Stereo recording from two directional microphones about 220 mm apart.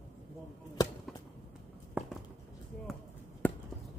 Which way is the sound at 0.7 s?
15° left (ahead or behind).